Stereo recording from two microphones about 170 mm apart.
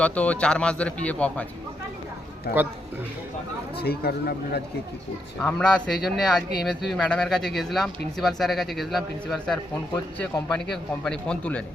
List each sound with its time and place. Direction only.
0.0 s speech: 10° left (ahead or behind)
3.8 s speech: 70° left (ahead or behind)
5.4 s speech: 5° left (ahead or behind)
11.0 s speech: 5° left (ahead or behind)